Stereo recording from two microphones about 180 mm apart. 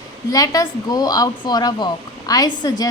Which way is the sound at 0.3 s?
20° left (ahead or behind).